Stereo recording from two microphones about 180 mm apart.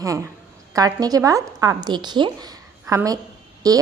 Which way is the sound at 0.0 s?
20° right (ahead or behind).